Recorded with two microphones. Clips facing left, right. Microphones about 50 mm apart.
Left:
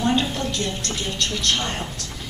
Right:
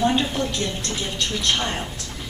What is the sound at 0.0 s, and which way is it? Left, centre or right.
A woman's voice, centre.